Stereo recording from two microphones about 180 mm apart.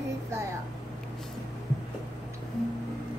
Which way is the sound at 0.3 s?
15° right (ahead or behind).